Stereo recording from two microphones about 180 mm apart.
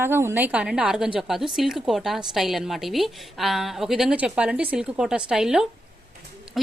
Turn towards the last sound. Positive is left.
turn(degrees=-5)  # may be behind; listen again after turning